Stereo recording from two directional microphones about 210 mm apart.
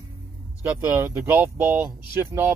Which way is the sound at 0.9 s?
10° right (ahead or behind).